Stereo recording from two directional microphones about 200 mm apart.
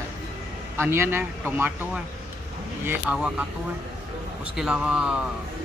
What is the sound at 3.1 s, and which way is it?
Speech, centre (ahead or behind).